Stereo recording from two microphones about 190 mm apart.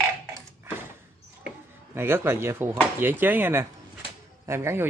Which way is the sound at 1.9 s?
10° right (ahead or behind).